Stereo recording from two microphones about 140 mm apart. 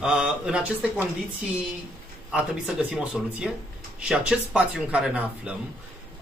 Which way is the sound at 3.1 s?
5° right (ahead or behind).